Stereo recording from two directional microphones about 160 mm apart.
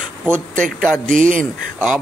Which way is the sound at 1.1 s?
55° right (ahead or behind).